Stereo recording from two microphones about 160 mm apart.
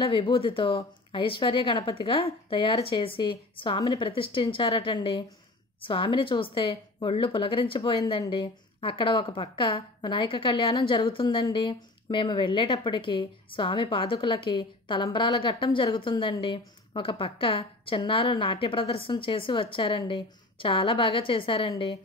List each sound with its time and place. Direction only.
0.0 s speech: 35° left (ahead or behind)